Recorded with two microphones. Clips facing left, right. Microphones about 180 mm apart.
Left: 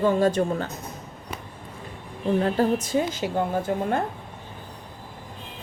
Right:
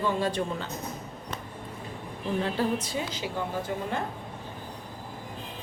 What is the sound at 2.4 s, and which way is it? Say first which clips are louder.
Speech: left 6 dB; 45° left (ahead or behind).